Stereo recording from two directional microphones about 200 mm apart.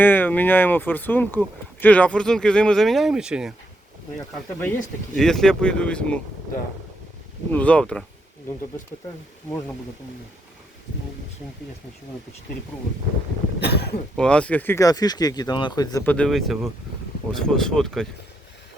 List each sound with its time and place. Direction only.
0.0 s speech: 10° left (ahead or behind)
4.6 s speech: 5° left (ahead or behind)
7.5 s speech: 5° left (ahead or behind)
13.6 s speech: 55° left (ahead or behind)
14.2 s speech: 5° left (ahead or behind)
16.1 s speech: centre (ahead or behind)